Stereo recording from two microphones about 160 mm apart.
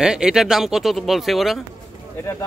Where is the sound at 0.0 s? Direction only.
5° right (ahead or behind).